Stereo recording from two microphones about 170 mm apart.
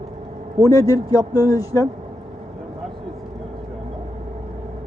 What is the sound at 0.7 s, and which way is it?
Speech, 20° left (ahead or behind).